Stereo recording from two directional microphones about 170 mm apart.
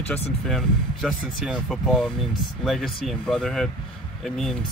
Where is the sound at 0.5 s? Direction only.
Centre (ahead or behind).